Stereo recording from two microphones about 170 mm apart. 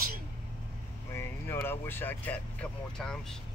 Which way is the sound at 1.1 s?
15° left (ahead or behind).